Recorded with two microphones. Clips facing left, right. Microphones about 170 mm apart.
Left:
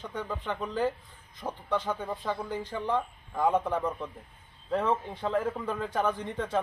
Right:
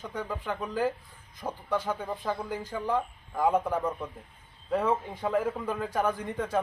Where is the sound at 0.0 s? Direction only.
10° right (ahead or behind).